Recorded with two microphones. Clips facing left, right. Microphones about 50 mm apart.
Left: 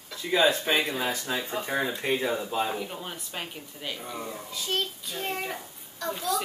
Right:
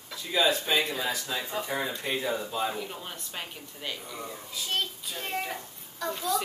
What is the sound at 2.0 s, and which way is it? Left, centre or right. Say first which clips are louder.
Speech: left 3 dB; left.